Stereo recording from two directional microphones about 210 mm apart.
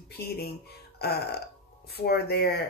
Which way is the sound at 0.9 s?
50° left (ahead or behind).